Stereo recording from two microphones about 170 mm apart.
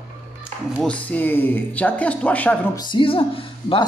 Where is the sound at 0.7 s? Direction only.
5° left (ahead or behind).